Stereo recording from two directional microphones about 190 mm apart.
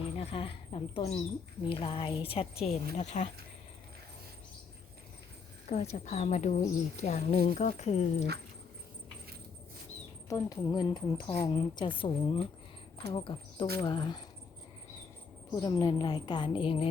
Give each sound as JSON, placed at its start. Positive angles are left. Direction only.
{"t": 0.2, "sound": "a woman's voice", "side_deg": 30}
{"t": 5.6, "sound": "a woman's voice", "side_deg": 35}
{"t": 10.2, "sound": "a woman's voice", "side_deg": 15}
{"t": 15.5, "sound": "a woman's voice", "side_deg": 20}